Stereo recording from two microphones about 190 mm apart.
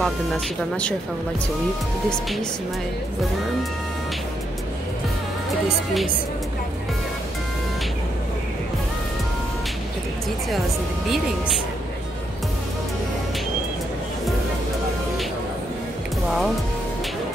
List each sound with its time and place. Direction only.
0.0 s speech: 5° left (ahead or behind)